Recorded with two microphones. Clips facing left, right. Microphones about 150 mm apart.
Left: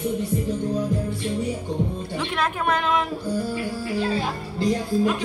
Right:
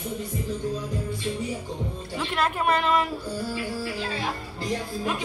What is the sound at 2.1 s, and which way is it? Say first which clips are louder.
Speech: even; 5° right (ahead or behind).